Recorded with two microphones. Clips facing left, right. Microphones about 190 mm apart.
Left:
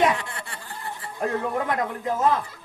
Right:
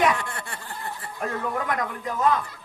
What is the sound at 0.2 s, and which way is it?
Chuckle, 50° right (ahead or behind).